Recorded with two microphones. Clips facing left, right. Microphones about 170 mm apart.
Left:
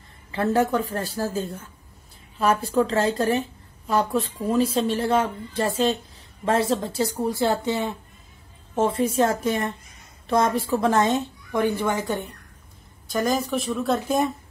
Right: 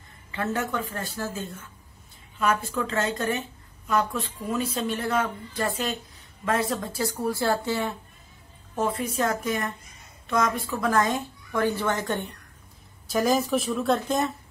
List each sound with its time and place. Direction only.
0.3 s a woman's voice: 35° left (ahead or behind); by 14.3 s 10° left (ahead or behind)